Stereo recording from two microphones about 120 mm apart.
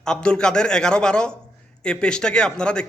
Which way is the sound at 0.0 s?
5° left (ahead or behind).